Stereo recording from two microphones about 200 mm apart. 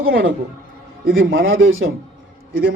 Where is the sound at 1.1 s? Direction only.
75° right (ahead or behind).